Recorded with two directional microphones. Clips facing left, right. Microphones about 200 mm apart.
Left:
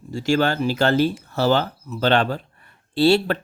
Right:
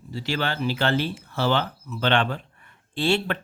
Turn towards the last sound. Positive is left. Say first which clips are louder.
# left 7 dB
turn(degrees=40)  # may be behind; listen again after turning